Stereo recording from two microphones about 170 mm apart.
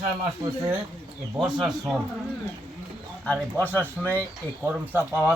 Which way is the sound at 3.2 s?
10° left (ahead or behind).